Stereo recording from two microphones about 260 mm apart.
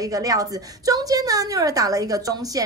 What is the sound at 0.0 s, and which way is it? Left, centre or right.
A woman's voice, centre.